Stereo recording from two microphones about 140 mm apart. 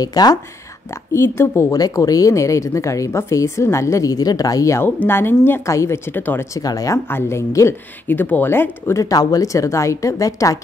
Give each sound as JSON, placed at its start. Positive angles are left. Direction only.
{"t": 0.0, "sound": "speech", "side_deg": 30}
{"t": 6.6, "sound": "speech", "side_deg": 25}